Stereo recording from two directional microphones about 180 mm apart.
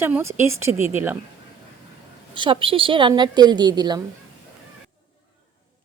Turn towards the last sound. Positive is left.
turn(degrees=-20)  # may be behind; listen again after turning